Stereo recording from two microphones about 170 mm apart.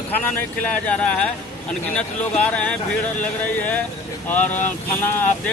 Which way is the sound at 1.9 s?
5° left (ahead or behind).